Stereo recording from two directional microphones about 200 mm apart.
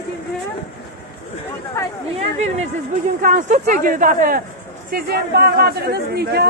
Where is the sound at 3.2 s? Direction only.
40° right (ahead or behind).